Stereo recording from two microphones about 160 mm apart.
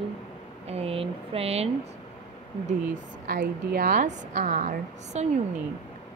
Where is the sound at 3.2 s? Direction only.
70° right (ahead or behind); by 5.3 s 50° right (ahead or behind).